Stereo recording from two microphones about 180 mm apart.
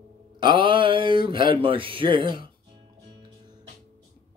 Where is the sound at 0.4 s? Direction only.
25° right (ahead or behind).